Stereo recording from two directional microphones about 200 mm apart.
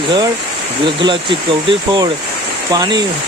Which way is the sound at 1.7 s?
20° right (ahead or behind).